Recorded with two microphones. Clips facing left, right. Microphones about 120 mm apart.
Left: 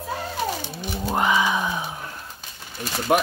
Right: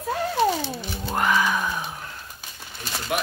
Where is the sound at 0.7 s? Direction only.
15° left (ahead or behind).